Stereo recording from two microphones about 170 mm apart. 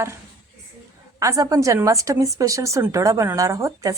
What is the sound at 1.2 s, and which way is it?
A woman's voice, 20° right (ahead or behind).